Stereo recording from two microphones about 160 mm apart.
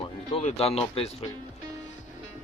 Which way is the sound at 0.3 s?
40° left (ahead or behind).